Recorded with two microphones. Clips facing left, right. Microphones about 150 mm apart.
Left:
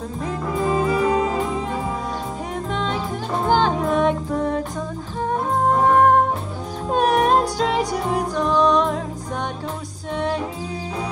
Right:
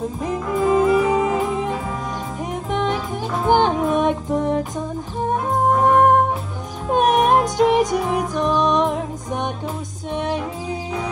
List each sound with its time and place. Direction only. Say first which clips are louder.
0.7 s music: right 4 dB; centre (ahead or behind)
2.7 s music: right 4 dB; 15° right (ahead or behind)
6.9 s music: right 2 dB; 20° right (ahead or behind)
10.1 s music: even; 15° right (ahead or behind)